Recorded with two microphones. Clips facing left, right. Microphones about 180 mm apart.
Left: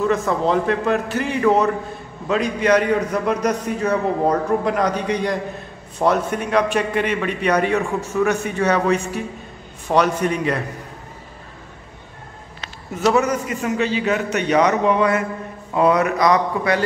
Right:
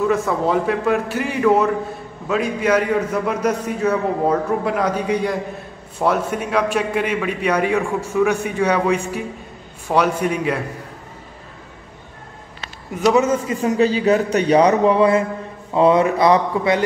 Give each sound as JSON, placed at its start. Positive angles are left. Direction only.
{"t": 0.1, "sound": "a man's voice", "side_deg": -10}
{"t": 12.9, "sound": "a man's voice", "side_deg": -10}
{"t": 13.2, "sound": "a man's voice", "side_deg": -25}